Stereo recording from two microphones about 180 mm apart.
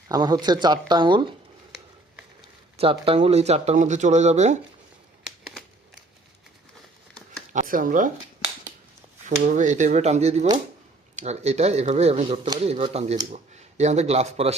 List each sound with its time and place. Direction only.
0.1 s speech: 20° right (ahead or behind)
2.7 s speech: 30° right (ahead or behind)
5.2 s a sound: 5° right (ahead or behind)
7.5 s speech: 50° right (ahead or behind)
9.4 s speech: 45° right (ahead or behind)